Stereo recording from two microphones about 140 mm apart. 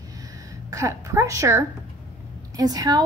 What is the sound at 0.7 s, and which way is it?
A woman's voice, 20° right (ahead or behind).